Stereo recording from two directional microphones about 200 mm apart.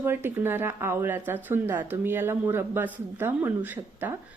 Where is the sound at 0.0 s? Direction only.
10° right (ahead or behind).